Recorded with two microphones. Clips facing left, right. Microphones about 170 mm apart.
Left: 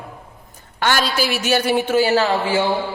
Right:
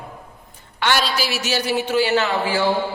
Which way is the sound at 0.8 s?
45° left (ahead or behind).